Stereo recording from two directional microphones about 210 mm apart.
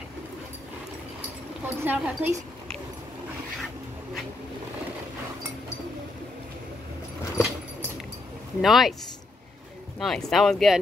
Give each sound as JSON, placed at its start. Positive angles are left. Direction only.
{"t": 1.6, "sound": "speech", "side_deg": -10}
{"t": 8.5, "sound": "speech", "side_deg": 0}
{"t": 9.9, "sound": "speech", "side_deg": 0}